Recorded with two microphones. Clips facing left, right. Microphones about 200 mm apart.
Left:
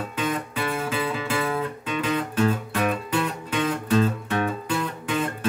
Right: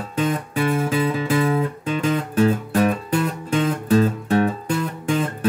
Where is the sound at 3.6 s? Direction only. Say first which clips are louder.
Right 4 dB; 35° right (ahead or behind).